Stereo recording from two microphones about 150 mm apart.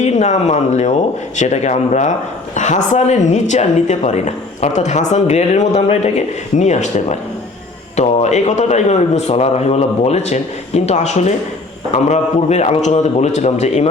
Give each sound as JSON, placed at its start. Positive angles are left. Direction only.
{"t": 0.0, "sound": "a woman's voice", "side_deg": 50}